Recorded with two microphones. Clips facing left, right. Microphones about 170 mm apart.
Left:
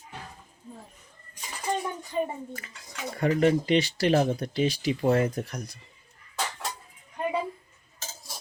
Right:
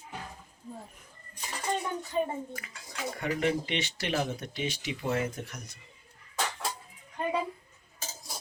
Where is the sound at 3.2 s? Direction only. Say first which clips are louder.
Left 7 dB; 35° left (ahead or behind).